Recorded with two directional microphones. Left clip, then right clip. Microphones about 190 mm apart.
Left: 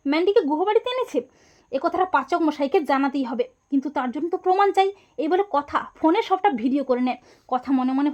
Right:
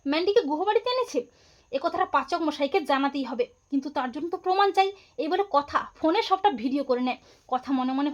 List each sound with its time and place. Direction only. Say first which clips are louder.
0.0 s speech: left 4 dB; 30° left (ahead or behind)